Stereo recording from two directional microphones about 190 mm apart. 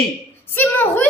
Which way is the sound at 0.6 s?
10° left (ahead or behind).